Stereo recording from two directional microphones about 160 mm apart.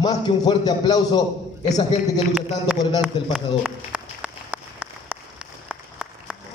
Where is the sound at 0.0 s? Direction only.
25° left (ahead or behind).